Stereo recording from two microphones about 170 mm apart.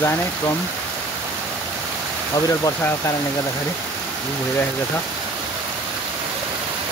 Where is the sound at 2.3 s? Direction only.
20° left (ahead or behind).